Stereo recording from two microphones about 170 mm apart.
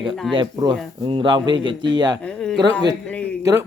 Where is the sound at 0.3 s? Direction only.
25° right (ahead or behind).